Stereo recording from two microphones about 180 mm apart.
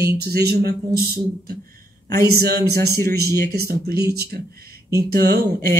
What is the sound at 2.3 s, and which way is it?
Speech, 60° right (ahead or behind).